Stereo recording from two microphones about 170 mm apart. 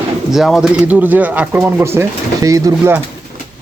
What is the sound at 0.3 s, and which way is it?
Speech, centre (ahead or behind).